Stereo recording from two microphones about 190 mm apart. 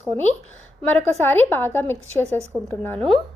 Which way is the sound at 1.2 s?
10° left (ahead or behind).